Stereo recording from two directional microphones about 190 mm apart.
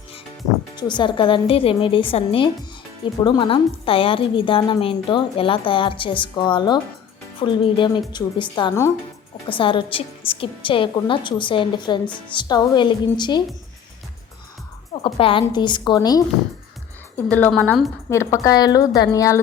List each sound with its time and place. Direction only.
0.8 s a woman's voice: 25° left (ahead or behind)
15.0 s a woman's voice: 30° left (ahead or behind)
17.2 s a woman's voice: 10° left (ahead or behind)
18.1 s a woman's voice: 15° left (ahead or behind)